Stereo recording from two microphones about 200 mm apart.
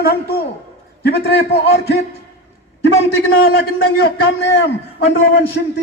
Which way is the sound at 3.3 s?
50° left (ahead or behind).